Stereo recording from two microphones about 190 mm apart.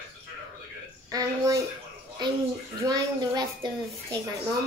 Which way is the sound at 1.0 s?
20° right (ahead or behind).